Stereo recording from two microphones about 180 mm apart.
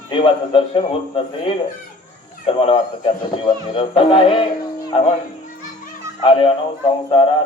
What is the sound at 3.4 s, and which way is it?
A man's voice, 30° left (ahead or behind).